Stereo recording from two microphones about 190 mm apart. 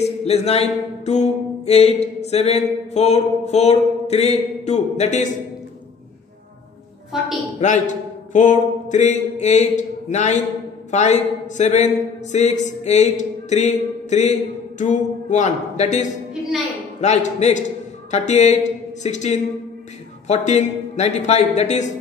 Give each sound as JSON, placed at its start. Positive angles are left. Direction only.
{"t": 0.0, "sound": "music", "side_deg": 35}
{"t": 7.6, "sound": "mantra", "side_deg": 40}
{"t": 10.9, "sound": "music", "side_deg": 40}